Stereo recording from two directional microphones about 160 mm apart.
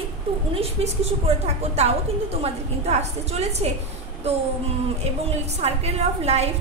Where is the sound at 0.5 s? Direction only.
40° right (ahead or behind).